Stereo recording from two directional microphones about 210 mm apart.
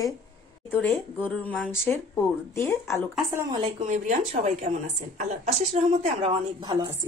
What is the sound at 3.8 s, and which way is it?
A woman's voice, 35° right (ahead or behind).